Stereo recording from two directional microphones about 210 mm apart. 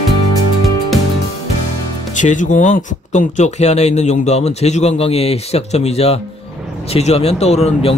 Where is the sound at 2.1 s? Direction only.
35° left (ahead or behind).